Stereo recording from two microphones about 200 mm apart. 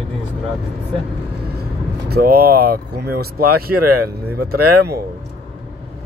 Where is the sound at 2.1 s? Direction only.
50° right (ahead or behind).